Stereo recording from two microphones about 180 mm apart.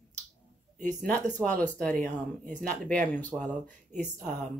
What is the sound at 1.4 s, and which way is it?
Speech, 10° left (ahead or behind).